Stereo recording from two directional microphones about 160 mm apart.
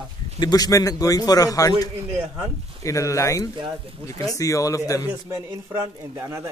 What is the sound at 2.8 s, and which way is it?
Speech, 20° left (ahead or behind).